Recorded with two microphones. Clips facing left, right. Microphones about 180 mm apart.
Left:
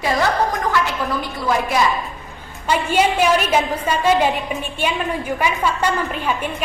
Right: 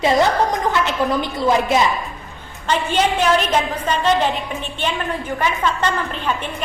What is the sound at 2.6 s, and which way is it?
A woman's voice, 10° left (ahead or behind).